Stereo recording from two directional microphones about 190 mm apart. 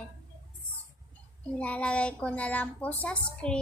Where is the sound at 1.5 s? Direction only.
5° left (ahead or behind).